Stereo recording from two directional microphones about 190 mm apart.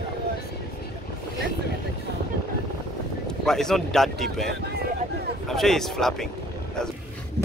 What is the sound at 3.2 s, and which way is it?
Speech, centre (ahead or behind).